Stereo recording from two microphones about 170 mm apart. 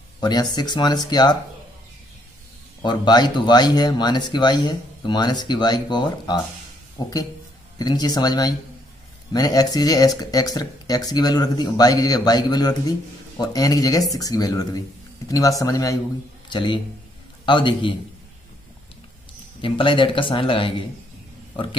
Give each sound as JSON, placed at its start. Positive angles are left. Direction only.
{"t": 0.2, "sound": "speech", "side_deg": 25}
{"t": 2.8, "sound": "a man's voice", "side_deg": 25}
{"t": 19.6, "sound": "speech", "side_deg": 30}